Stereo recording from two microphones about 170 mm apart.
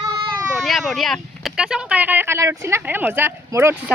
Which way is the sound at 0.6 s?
Centre (ahead or behind).